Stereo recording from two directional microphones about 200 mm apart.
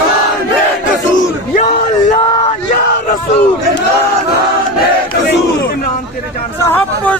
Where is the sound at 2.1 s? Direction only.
30° left (ahead or behind).